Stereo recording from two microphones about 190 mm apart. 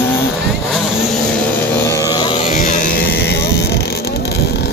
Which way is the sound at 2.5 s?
45° left (ahead or behind).